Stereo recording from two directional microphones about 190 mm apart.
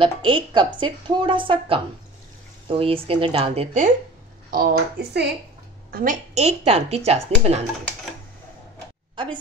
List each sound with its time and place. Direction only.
0.0 s a woman's voice: 25° right (ahead or behind)
4.5 s speech: 55° right (ahead or behind)
5.9 s a woman's voice: 45° right (ahead or behind)
9.1 s speech: 25° right (ahead or behind)